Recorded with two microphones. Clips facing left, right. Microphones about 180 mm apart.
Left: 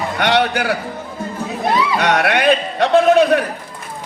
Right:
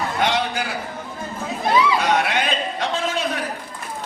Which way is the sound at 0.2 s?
70° left (ahead or behind).